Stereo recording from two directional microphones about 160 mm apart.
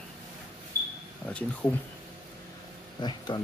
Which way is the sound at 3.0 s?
25° left (ahead or behind).